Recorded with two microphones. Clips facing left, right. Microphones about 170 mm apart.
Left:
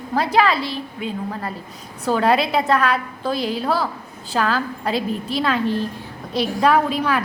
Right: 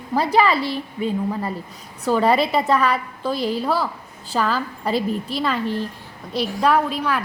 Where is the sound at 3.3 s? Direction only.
90° left.